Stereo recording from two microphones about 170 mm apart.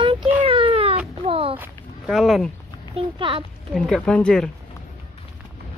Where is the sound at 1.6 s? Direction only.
Centre (ahead or behind).